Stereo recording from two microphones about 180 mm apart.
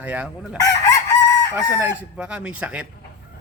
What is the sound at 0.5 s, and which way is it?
Chicken, 20° left (ahead or behind).